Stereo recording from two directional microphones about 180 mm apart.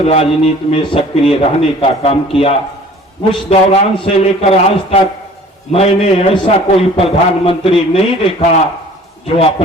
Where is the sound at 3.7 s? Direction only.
35° left (ahead or behind).